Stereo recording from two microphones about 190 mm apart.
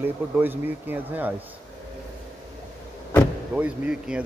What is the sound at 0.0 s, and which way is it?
Speech, 10° right (ahead or behind).